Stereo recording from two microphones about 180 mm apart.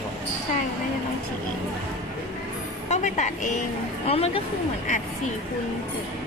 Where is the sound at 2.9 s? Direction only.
40° left (ahead or behind).